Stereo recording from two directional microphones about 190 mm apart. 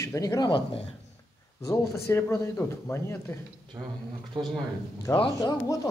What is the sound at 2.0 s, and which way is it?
Speech, 15° left (ahead or behind).